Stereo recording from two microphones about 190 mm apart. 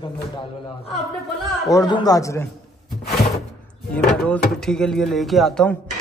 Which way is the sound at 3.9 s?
5° left (ahead or behind).